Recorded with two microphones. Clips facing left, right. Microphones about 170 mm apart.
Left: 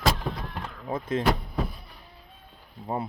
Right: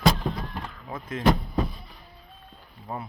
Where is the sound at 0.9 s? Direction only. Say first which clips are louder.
Left 7 dB; 30° left (ahead or behind).